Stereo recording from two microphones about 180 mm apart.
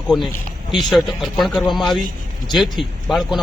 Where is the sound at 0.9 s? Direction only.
Centre (ahead or behind).